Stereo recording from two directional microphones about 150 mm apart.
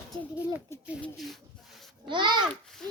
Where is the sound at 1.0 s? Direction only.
Centre (ahead or behind).